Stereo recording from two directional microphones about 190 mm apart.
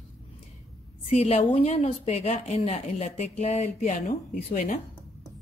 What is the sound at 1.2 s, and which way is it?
A woman's voice, 30° left (ahead or behind).